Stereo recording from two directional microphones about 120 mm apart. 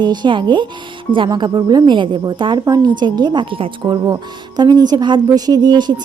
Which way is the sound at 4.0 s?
35° right (ahead or behind).